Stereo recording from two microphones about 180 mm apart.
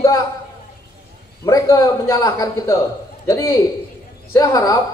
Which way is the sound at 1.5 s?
20° left (ahead or behind).